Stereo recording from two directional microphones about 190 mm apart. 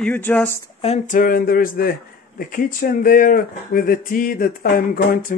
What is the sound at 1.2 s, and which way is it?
Speech, 50° left (ahead or behind).